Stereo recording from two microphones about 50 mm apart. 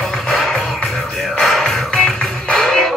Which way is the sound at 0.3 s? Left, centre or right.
Centre.